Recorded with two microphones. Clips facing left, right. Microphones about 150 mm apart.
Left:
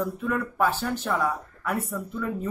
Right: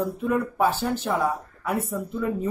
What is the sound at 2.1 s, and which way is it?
Speech, 20° right (ahead or behind).